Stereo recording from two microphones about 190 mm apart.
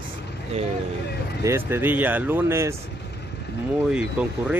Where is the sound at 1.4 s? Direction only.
15° right (ahead or behind).